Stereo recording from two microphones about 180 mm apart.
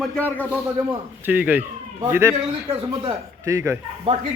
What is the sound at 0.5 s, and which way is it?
Speech, 10° right (ahead or behind).